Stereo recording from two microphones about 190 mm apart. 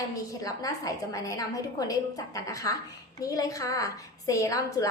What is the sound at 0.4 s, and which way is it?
A woman's voice, 20° left (ahead or behind).